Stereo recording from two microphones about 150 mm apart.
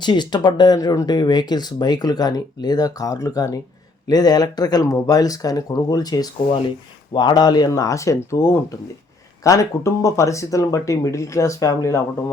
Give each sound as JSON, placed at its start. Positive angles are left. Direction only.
{"t": 0.0, "sound": "speech", "side_deg": 30}